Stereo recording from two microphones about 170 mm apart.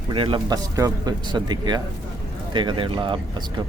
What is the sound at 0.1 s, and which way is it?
Speech, 30° right (ahead or behind).